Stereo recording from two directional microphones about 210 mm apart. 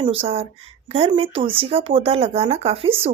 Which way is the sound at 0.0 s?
25° right (ahead or behind).